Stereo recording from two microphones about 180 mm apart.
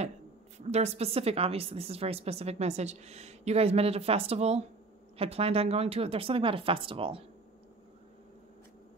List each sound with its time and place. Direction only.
0.6 s a woman's voice: 40° right (ahead or behind)